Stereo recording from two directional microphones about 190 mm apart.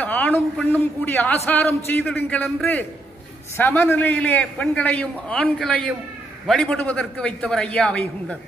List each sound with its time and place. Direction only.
0.0 s a man's voice: 10° left (ahead or behind)